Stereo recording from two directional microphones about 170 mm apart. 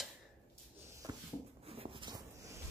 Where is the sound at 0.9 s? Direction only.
20° right (ahead or behind).